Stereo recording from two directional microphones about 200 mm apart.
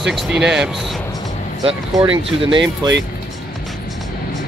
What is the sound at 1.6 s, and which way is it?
Speech, 25° right (ahead or behind).